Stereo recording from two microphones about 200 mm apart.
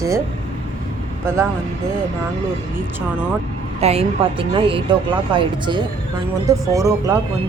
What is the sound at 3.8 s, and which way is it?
A woman's voice, 30° right (ahead or behind).